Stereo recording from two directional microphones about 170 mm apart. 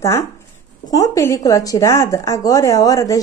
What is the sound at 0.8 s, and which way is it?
Speech, 20° left (ahead or behind).